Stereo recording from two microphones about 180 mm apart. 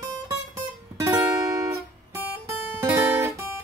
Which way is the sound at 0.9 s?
15° right (ahead or behind).